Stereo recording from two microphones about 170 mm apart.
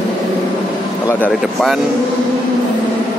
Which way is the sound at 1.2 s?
Centre (ahead or behind).